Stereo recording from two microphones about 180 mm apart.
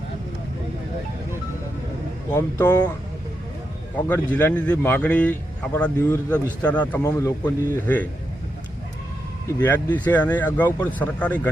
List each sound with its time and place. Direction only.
2.3 s speech: 15° left (ahead or behind)
4.1 s speech: 10° left (ahead or behind)
9.5 s speech: 10° left (ahead or behind)